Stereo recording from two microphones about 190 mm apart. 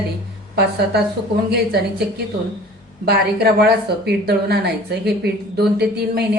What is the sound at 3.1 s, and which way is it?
A woman's voice, 55° right (ahead or behind).